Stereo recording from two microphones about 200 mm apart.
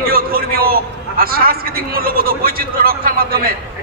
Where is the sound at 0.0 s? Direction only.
45° right (ahead or behind).